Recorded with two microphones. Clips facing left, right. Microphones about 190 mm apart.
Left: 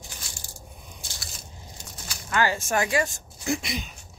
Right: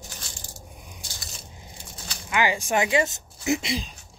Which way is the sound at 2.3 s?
15° right (ahead or behind).